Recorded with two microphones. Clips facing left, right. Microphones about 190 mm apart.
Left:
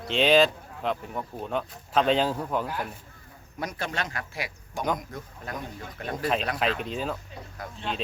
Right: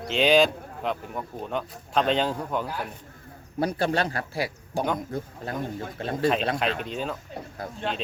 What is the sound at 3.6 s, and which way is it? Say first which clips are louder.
Speech: right 8 dB; 30° right (ahead or behind).